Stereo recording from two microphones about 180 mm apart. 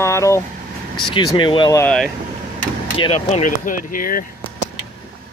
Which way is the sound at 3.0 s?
35° left (ahead or behind).